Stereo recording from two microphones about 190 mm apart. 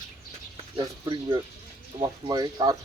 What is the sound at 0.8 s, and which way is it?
Speech, 20° right (ahead or behind).